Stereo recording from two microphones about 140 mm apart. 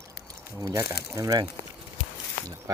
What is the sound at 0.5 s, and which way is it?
Speech, 20° right (ahead or behind).